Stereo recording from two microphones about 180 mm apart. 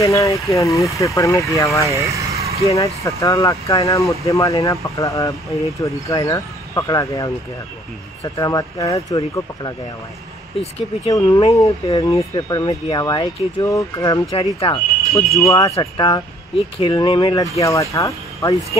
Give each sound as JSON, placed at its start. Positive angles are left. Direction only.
{"t": 0.0, "sound": "speech", "side_deg": 15}
{"t": 2.0, "sound": "vehicle", "side_deg": -15}
{"t": 2.7, "sound": "speech", "side_deg": 15}
{"t": 8.4, "sound": "speech", "side_deg": 20}
{"t": 11.1, "sound": "speech", "side_deg": 20}
{"t": 15.4, "sound": "speech", "side_deg": 20}